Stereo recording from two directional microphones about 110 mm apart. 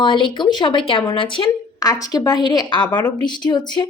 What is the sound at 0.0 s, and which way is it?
Speech, 45° left (ahead or behind).